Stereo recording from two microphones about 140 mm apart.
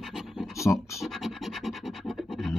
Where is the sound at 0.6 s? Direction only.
20° left (ahead or behind).